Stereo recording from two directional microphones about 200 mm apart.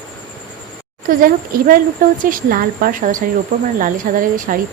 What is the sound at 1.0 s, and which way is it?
Speech, 45° right (ahead or behind).